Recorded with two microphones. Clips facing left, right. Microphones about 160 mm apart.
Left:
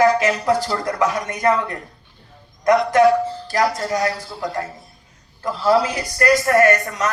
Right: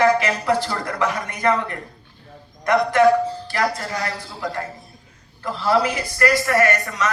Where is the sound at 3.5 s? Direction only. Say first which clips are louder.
Left 6 dB; 45° left (ahead or behind).